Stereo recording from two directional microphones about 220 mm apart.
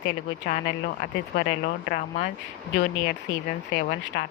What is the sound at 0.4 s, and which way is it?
Speech, 40° left (ahead or behind).